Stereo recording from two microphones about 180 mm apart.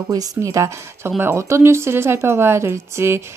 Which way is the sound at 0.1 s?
20° right (ahead or behind).